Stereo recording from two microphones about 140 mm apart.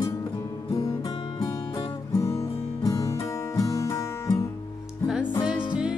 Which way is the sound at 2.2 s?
20° left (ahead or behind).